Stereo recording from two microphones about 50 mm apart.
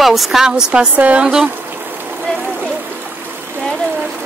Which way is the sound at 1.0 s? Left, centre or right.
Right.